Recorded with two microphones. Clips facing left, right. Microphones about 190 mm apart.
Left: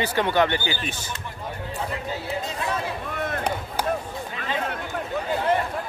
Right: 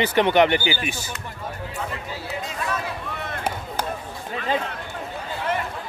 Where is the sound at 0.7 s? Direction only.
10° right (ahead or behind).